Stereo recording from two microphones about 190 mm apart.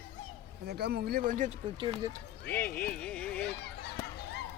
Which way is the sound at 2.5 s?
10° left (ahead or behind).